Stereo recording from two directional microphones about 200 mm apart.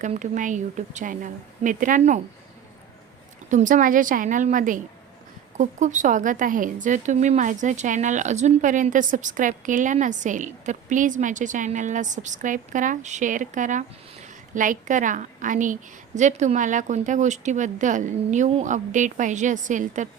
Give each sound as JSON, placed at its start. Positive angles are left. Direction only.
{"t": 0.0, "sound": "a woman's voice", "side_deg": -40}
{"t": 3.5, "sound": "a woman's voice", "side_deg": -40}